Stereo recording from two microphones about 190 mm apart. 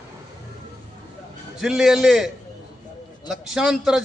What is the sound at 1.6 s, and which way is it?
A man's voice, centre (ahead or behind).